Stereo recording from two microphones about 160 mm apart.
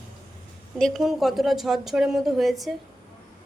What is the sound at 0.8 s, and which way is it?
A woman's voice, centre (ahead or behind).